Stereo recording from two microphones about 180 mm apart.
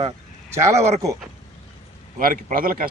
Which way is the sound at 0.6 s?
15° right (ahead or behind).